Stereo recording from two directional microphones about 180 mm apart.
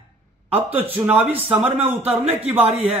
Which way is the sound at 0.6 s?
10° right (ahead or behind).